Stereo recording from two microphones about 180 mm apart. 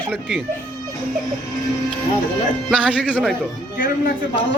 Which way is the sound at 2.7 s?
5° right (ahead or behind).